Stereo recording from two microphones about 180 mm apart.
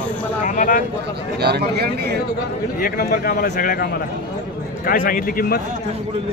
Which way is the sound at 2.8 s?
55° left (ahead or behind).